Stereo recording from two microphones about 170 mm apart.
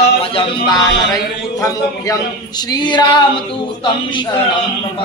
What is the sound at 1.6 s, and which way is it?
Speech, 20° left (ahead or behind).